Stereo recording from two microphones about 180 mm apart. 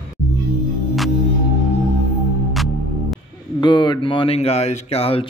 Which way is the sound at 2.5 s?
Centre (ahead or behind).